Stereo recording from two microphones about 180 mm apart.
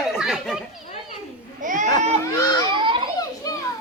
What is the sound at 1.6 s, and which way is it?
Speech, 45° right (ahead or behind).